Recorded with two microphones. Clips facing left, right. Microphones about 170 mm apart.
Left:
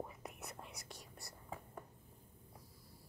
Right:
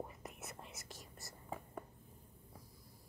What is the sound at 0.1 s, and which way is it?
Whispering, centre (ahead or behind).